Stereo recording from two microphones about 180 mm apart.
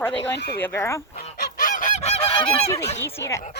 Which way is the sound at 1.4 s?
50° left (ahead or behind).